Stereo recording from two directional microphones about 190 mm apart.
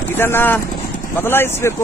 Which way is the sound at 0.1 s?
10° left (ahead or behind).